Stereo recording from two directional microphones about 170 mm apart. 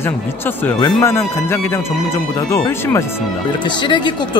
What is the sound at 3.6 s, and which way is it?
Speech, 25° left (ahead or behind).